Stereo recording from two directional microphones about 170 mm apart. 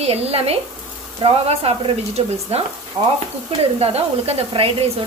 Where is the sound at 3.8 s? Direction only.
35° right (ahead or behind).